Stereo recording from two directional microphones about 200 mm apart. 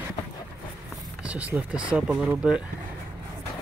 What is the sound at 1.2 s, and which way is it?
Speech, 5° right (ahead or behind).